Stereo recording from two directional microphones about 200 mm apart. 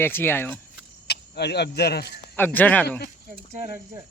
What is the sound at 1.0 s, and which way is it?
Speech, 55° left (ahead or behind).